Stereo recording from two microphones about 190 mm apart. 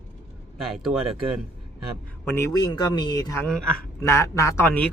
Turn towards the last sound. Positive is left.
turn(degrees=10)  # may be behind; listen again after turning